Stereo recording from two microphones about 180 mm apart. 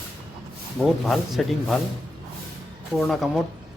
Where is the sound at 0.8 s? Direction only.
Centre (ahead or behind).